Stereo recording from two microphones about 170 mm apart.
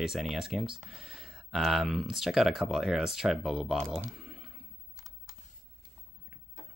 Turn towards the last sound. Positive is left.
turn(degrees=-20)  # may be behind; listen again after turning